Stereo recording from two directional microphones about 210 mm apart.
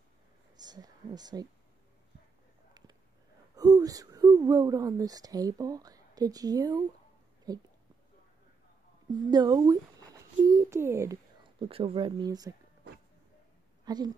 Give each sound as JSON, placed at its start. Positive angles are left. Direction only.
{"t": 0.6, "sound": "speech", "side_deg": -20}
{"t": 3.5, "sound": "speech", "side_deg": -15}
{"t": 9.1, "sound": "speech", "side_deg": -20}
{"t": 11.6, "sound": "speech", "side_deg": -25}
{"t": 13.8, "sound": "speech", "side_deg": -20}